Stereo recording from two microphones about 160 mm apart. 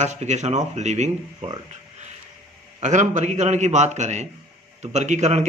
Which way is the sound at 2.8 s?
50° right (ahead or behind).